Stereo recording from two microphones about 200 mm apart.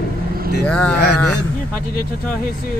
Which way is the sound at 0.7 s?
5° left (ahead or behind).